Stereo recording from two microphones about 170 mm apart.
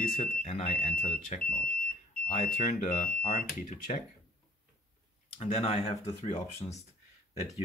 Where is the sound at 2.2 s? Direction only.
55° left (ahead or behind).